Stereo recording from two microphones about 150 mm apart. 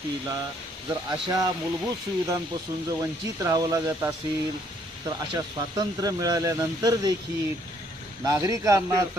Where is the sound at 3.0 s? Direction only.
20° right (ahead or behind).